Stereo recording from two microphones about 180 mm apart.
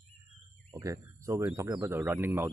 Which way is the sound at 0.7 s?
15° right (ahead or behind).